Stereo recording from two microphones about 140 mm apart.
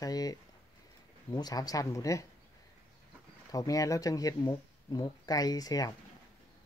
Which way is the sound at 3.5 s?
25° left (ahead or behind).